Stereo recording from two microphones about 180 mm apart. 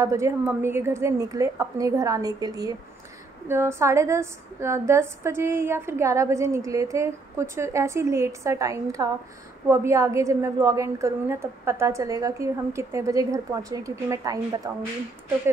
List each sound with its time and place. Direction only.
0.0 s a woman's voice: 15° right (ahead or behind)